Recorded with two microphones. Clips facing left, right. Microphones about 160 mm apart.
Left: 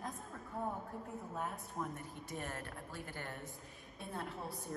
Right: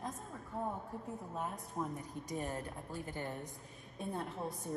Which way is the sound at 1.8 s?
15° right (ahead or behind).